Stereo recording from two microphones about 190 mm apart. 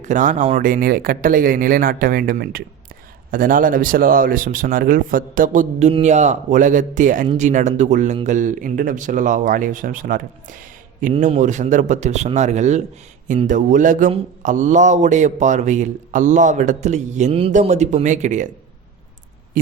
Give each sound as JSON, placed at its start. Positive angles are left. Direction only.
{"t": 0.0, "sound": "a man's voice", "side_deg": -40}